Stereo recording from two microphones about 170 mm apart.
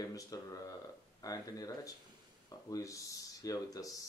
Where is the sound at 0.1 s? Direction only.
20° left (ahead or behind).